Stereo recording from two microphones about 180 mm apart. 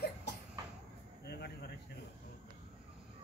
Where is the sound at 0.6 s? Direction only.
20° right (ahead or behind).